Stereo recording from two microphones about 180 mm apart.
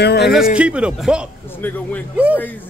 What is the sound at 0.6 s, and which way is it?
Speech, 5° right (ahead or behind).